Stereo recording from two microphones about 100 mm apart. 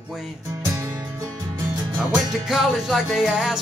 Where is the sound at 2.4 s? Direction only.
Centre (ahead or behind).